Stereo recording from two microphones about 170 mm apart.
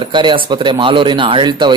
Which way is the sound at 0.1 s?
25° right (ahead or behind).